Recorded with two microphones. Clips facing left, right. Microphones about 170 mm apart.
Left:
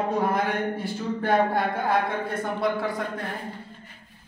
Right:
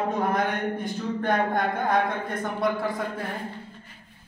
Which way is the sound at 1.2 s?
5° left (ahead or behind).